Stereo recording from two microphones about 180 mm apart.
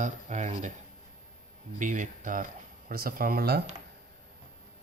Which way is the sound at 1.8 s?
45° right (ahead or behind).